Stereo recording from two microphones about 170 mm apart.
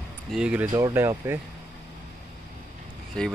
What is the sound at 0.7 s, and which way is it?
Speech, 25° right (ahead or behind).